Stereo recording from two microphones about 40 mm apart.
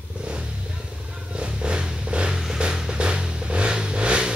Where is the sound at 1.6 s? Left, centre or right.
Right.